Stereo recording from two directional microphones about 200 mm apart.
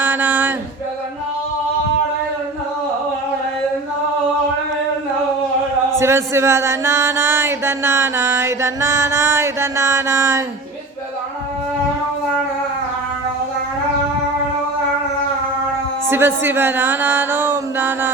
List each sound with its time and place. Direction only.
0.0 s a sound: 10° right (ahead or behind)
6.0 s chant: 15° right (ahead or behind)
16.0 s speech: 10° right (ahead or behind)